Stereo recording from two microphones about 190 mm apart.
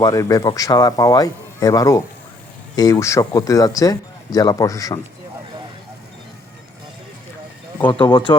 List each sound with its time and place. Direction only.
0.0 s a man's voice: 20° left (ahead or behind)
7.9 s a man's voice: 25° left (ahead or behind)